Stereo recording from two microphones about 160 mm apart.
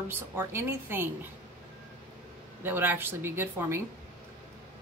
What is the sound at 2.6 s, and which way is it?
Speech, 10° right (ahead or behind).